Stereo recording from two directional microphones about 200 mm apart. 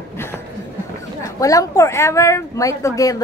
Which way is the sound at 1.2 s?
15° left (ahead or behind).